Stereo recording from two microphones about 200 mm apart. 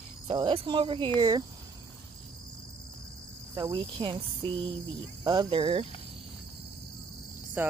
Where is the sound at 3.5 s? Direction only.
20° right (ahead or behind).